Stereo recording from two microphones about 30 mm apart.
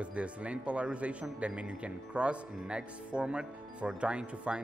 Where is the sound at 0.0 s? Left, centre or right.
Right.